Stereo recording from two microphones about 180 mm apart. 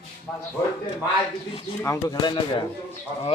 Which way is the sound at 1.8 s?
20° left (ahead or behind).